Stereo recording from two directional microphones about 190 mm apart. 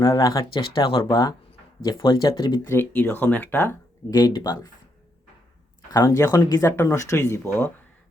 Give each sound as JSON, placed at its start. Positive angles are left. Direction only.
{"t": 0.0, "sound": "speech", "side_deg": 20}
{"t": 2.7, "sound": "speech", "side_deg": 10}
{"t": 5.9, "sound": "speech", "side_deg": 15}